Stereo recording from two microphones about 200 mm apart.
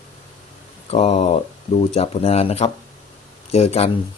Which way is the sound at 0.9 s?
30° left (ahead or behind).